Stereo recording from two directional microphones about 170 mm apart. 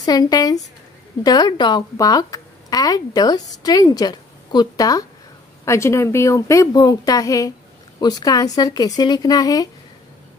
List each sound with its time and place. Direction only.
0.0 s a woman's voice: 20° left (ahead or behind)